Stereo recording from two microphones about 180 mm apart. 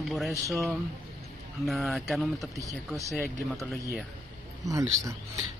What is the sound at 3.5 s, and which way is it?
Speech, 15° right (ahead or behind).